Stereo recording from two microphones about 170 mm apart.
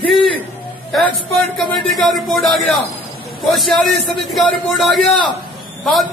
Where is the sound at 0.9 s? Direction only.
Centre (ahead or behind).